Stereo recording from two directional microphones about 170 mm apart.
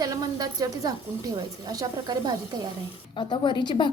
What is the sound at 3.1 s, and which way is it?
Speech, 30° left (ahead or behind).